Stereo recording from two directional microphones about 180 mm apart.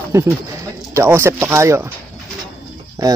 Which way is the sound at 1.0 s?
15° right (ahead or behind).